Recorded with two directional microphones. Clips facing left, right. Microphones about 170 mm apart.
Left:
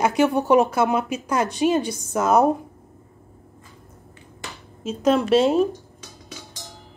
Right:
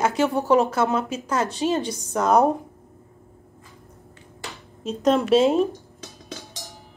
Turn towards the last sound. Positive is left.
turn(degrees=0)  # may be behind; listen again after turning